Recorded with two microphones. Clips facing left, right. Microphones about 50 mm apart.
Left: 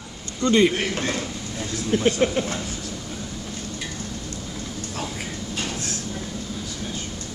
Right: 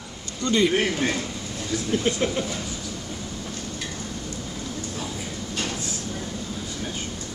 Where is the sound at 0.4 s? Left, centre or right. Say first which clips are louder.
Left 4 dB; left.